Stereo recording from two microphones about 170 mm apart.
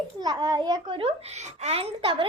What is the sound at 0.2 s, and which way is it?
A child's voice, 25° right (ahead or behind).